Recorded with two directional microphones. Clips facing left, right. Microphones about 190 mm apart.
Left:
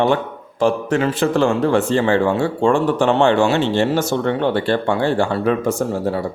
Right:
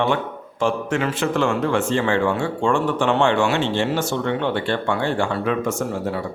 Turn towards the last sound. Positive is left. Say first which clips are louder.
# left 4 dB
turn(degrees=35)  # may be behind; listen again after turning